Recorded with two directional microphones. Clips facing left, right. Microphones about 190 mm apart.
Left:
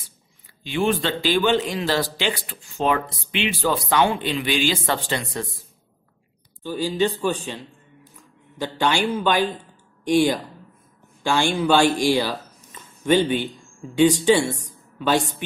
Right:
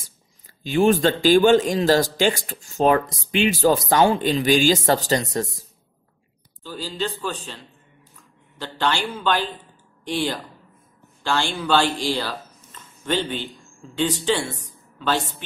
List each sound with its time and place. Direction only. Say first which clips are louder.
0.7 s speech: right 5 dB; 45° right (ahead or behind)
6.6 s a man's voice: left 6 dB; 15° left (ahead or behind)